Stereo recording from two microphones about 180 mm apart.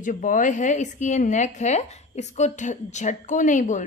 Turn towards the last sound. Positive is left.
turn(degrees=45)  # may be behind; listen again after turning